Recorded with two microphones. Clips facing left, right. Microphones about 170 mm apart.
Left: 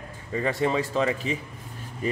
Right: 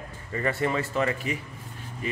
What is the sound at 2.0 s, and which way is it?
Speech, 40° left (ahead or behind).